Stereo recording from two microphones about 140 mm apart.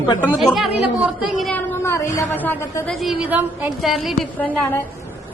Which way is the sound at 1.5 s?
20° left (ahead or behind).